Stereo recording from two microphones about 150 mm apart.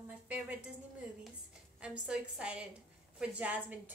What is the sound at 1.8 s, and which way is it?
A woman's voice, 5° right (ahead or behind).